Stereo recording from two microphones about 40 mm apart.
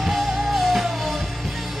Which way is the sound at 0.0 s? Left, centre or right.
Centre.